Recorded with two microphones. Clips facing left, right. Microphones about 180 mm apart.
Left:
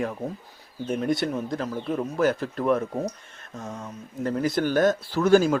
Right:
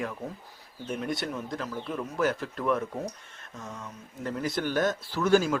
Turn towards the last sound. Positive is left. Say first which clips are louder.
# left 5 dB
turn(degrees=40)  # may be behind; listen again after turning